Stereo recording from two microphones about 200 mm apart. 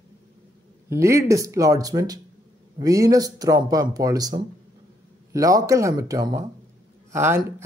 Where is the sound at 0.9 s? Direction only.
15° right (ahead or behind).